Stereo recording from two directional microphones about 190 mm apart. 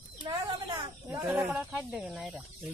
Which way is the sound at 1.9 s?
5° right (ahead or behind).